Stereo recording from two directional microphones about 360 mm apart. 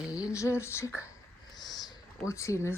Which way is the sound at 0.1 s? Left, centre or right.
Centre.